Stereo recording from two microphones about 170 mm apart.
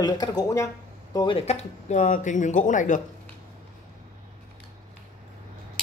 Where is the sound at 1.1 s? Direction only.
30° left (ahead or behind); by 3.0 s 50° left (ahead or behind).